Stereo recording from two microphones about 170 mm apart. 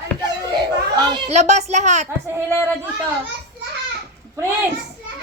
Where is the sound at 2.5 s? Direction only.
10° left (ahead or behind).